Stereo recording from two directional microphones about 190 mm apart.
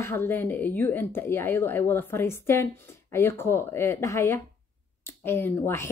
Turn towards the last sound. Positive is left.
turn(degrees=15)  # may be behind; listen again after turning